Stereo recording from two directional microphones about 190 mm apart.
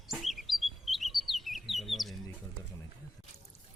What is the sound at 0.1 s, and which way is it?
Chirp, centre (ahead or behind).